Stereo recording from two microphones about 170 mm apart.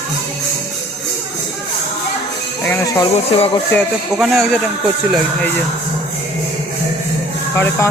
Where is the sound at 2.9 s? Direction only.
25° left (ahead or behind).